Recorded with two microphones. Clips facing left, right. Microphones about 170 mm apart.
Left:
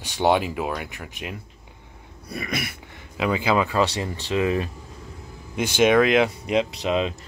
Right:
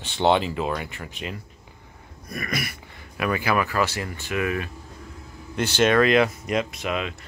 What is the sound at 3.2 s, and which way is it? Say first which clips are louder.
Speech: left 2 dB; 20° left (ahead or behind).